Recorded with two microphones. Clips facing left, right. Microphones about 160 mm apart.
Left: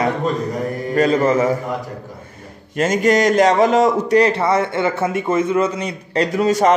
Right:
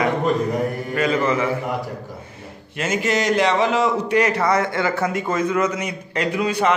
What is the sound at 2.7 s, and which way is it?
A man's voice, 45° left (ahead or behind).